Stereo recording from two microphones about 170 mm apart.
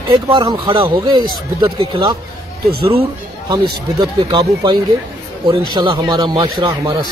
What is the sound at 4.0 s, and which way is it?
A man's voice, 25° right (ahead or behind).